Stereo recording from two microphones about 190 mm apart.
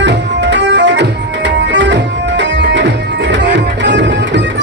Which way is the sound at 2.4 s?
70° right (ahead or behind).